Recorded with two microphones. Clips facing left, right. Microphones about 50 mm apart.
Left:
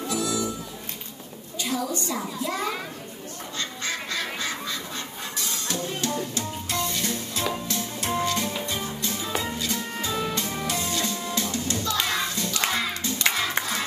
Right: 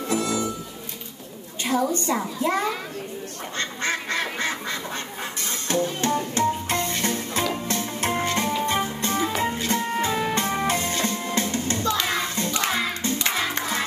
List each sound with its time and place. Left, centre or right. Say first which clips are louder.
0.1 s music: right 3 dB; right
1.6 s a woman's voice: right 5 dB; right
3.5 s duck: right 5 dB; right
5.4 s music: right 6 dB; right
12.6 s music: even; centre
13.2 s crowd: left 2 dB; centre